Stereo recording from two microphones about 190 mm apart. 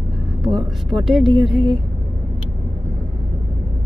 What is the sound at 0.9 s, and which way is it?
Speech, centre (ahead or behind).